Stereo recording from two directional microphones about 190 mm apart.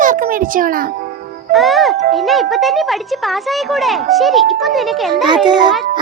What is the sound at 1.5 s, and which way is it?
Speech, centre (ahead or behind).